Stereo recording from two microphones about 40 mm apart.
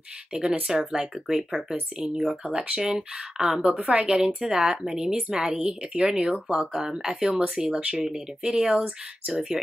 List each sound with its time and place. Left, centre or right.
0.3 s speech: centre
3.6 s a woman's voice: right
4.0 s speech: centre
6.1 s speech: right
6.8 s speech: centre